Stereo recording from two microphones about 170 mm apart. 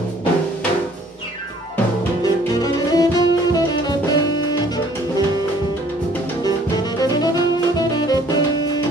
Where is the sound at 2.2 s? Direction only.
20° left (ahead or behind).